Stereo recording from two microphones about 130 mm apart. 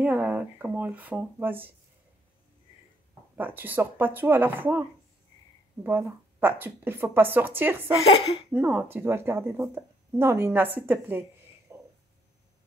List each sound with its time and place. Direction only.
0.0 s speech: 10° right (ahead or behind)
3.3 s speech: 15° right (ahead or behind)
5.9 s speech: 15° right (ahead or behind)
8.0 s speech: 50° left (ahead or behind)
8.5 s speech: 15° right (ahead or behind)
11.7 s a sound: 20° right (ahead or behind)